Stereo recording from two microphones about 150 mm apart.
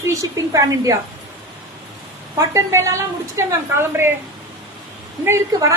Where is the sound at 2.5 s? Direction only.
20° right (ahead or behind).